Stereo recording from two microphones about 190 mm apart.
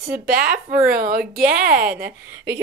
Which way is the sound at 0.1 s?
50° right (ahead or behind).